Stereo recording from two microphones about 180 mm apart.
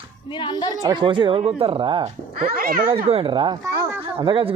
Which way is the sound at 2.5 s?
55° right (ahead or behind).